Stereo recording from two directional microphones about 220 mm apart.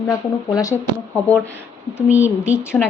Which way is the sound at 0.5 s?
10° left (ahead or behind).